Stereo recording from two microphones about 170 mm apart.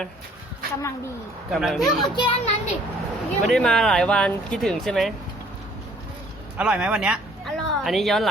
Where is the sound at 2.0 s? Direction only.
25° left (ahead or behind).